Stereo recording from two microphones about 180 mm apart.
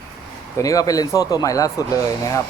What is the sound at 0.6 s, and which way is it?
Speech, 20° left (ahead or behind).